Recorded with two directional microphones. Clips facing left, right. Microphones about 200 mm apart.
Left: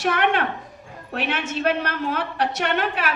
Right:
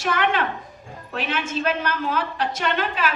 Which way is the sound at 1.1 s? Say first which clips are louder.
Even; 65° left (ahead or behind).